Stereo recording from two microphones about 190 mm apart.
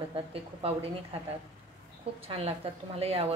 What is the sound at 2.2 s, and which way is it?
A woman's voice, 30° right (ahead or behind).